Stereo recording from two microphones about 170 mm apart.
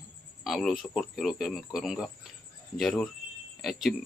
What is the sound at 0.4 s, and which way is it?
Speech, centre (ahead or behind).